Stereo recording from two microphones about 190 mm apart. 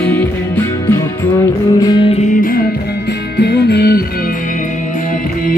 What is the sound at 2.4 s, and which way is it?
Music, 50° left (ahead or behind).